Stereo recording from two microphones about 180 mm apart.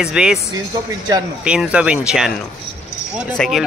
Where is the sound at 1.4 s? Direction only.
5° right (ahead or behind).